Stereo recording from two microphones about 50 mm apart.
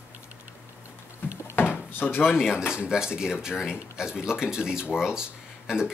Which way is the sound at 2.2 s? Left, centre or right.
Centre.